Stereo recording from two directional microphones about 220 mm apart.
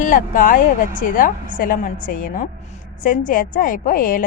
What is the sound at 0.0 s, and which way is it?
A woman's voice, 35° left (ahead or behind).